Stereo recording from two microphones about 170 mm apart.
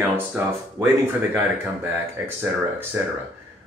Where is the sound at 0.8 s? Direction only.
20° right (ahead or behind).